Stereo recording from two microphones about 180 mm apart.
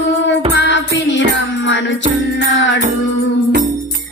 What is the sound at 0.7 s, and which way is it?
Music, 85° left.